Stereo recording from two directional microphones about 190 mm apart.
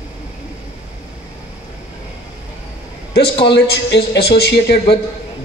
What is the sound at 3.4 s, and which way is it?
A man's voice, 60° left (ahead or behind).